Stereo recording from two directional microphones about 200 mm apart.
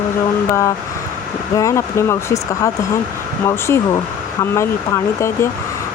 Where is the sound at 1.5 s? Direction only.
15° left (ahead or behind).